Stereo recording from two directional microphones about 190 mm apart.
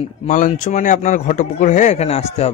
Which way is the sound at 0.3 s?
45° left (ahead or behind).